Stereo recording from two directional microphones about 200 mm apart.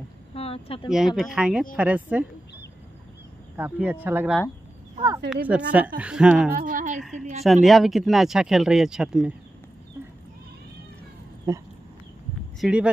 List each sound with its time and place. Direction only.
0.3 s a sound: 30° left (ahead or behind)
0.8 s speech: centre (ahead or behind)
3.5 s speech: 10° right (ahead or behind)
5.5 s speech: 5° right (ahead or behind)
6.5 s a sound: 45° right (ahead or behind)
7.0 s speech: centre (ahead or behind)
11.5 s speech: 15° right (ahead or behind)
12.5 s speech: 5° right (ahead or behind)